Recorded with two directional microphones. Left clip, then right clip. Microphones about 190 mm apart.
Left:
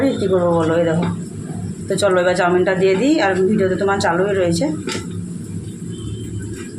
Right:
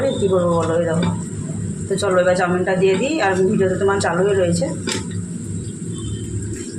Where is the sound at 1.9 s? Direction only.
45° left (ahead or behind).